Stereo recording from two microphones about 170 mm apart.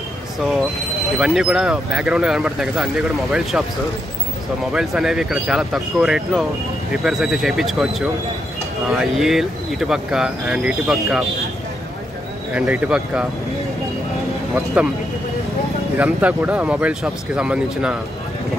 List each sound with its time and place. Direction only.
1.2 s speech: 5° right (ahead or behind)
4.7 s speech: 5° right (ahead or behind)
12.5 s speech: 10° right (ahead or behind)
14.5 s speech: 5° right (ahead or behind)
16.0 s speech: 10° right (ahead or behind)